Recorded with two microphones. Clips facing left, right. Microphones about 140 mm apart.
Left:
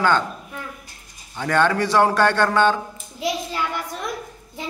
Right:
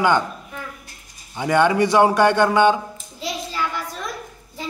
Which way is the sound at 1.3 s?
15° right (ahead or behind).